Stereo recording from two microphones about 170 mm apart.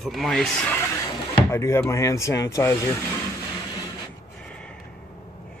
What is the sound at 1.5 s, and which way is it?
Speech, 15° left (ahead or behind).